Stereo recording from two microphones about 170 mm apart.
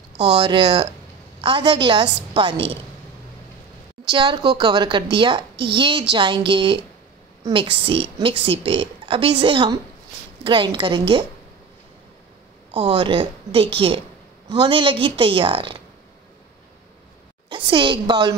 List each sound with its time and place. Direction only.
0.3 s a woman's voice: 30° right (ahead or behind)
4.0 s a woman's voice: 30° right (ahead or behind)
12.7 s a woman's voice: 35° right (ahead or behind)
17.5 s a woman's voice: 30° right (ahead or behind)